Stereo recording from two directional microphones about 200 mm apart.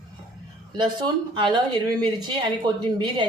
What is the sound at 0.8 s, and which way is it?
Speech, 20° right (ahead or behind).